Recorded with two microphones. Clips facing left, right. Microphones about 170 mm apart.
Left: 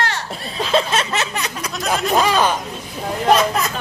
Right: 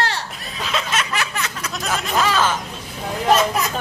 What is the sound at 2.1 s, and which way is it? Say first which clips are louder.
Speech: left 2 dB; 15° left (ahead or behind).